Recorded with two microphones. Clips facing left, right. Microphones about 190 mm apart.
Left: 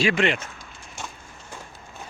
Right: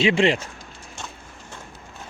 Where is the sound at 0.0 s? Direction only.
30° right (ahead or behind).